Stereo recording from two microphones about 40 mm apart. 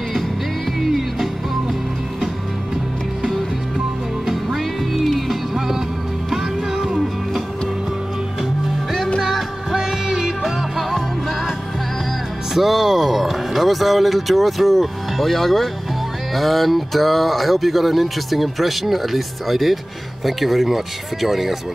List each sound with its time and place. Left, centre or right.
0.7 s music: centre
3.3 s music: centre
9.7 s music: centre
10.2 s music: centre
12.5 s a sound: centre
16.3 s speech: centre